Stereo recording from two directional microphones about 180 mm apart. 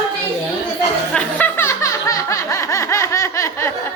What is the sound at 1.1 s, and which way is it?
Snicker, 5° left (ahead or behind).